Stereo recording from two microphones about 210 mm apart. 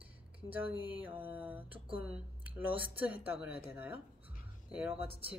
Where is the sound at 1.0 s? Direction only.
10° right (ahead or behind).